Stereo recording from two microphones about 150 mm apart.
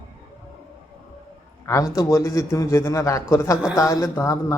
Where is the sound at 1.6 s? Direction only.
20° left (ahead or behind).